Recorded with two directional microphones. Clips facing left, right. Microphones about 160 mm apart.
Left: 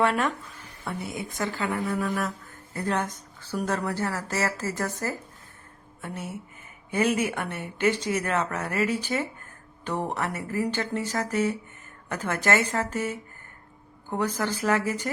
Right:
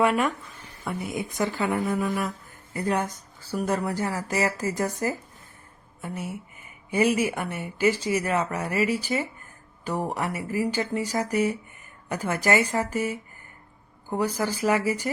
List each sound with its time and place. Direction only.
0.0 s speech: 10° right (ahead or behind)